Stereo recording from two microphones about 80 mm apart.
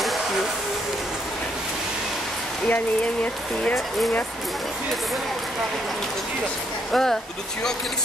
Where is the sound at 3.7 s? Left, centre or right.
Centre.